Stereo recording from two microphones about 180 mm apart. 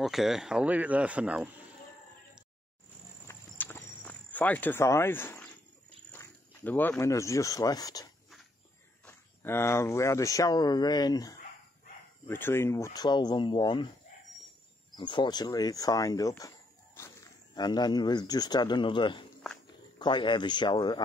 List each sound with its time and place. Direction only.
0.0 s speech: centre (ahead or behind)
3.3 s walk: 10° left (ahead or behind)
6.1 s speech: 10° left (ahead or behind)
15.0 s speech: 25° left (ahead or behind)